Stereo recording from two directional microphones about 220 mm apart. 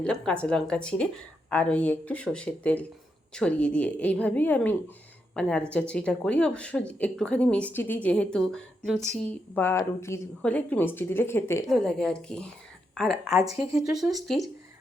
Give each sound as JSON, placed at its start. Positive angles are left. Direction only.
{"t": 0.0, "sound": "a woman's voice", "side_deg": 5}
{"t": 13.5, "sound": "speech", "side_deg": -15}
{"t": 13.7, "sound": "a woman's voice", "side_deg": 0}